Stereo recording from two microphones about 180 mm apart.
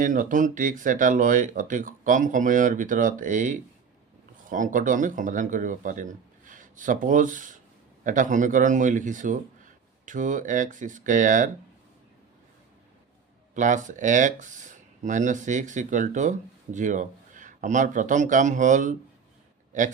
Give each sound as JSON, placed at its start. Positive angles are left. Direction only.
{"t": 0.0, "sound": "speech", "side_deg": -50}
{"t": 13.5, "sound": "speech", "side_deg": -45}